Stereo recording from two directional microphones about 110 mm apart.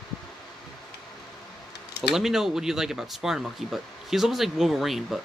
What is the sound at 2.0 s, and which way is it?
Speech, 5° right (ahead or behind).